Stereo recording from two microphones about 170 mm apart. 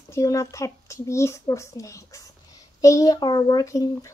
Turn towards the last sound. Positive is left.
turn(degrees=20)  # may be behind; listen again after turning